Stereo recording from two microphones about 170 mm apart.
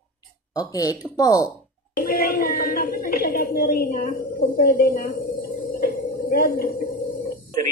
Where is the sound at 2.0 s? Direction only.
65° left (ahead or behind).